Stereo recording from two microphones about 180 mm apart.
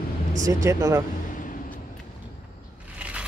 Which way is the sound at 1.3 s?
50° left (ahead or behind).